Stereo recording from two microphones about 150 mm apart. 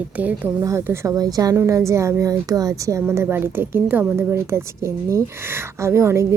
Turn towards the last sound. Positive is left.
turn(degrees=-15)  # may be behind; listen again after turning